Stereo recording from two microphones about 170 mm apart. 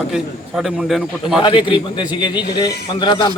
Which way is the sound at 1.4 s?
30° left (ahead or behind).